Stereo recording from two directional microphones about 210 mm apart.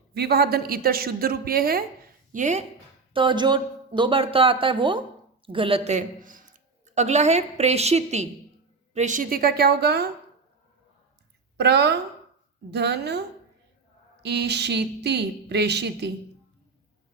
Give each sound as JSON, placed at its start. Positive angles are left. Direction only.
{"t": 0.1, "sound": "speech", "side_deg": -50}
{"t": 2.3, "sound": "speech", "side_deg": -35}
{"t": 3.1, "sound": "a man's voice", "side_deg": -25}
{"t": 11.5, "sound": "speech", "side_deg": -50}